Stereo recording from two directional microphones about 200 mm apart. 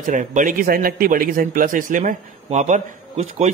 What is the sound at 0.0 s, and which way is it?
A man's voice, 40° right (ahead or behind).